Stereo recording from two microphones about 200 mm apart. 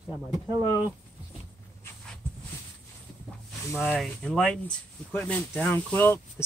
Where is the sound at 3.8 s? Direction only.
5° left (ahead or behind).